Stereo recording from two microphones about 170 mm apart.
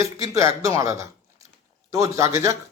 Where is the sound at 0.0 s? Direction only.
15° right (ahead or behind).